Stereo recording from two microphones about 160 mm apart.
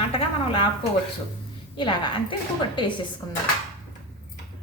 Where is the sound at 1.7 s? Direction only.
30° left (ahead or behind).